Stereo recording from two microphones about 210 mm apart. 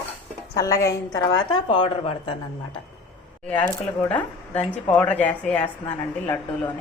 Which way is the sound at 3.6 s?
5° left (ahead or behind).